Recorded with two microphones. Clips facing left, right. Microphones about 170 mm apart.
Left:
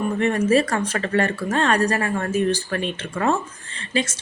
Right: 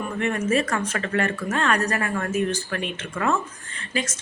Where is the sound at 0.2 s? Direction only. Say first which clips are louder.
Left 4 dB; 35° left (ahead or behind).